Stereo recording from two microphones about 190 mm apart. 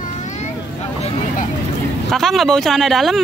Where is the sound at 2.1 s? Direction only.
Centre (ahead or behind).